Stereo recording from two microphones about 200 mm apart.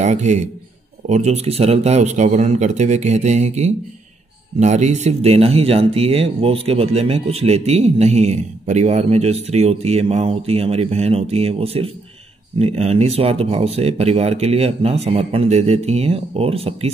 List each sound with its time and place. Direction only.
0.0 s speech: 35° right (ahead or behind)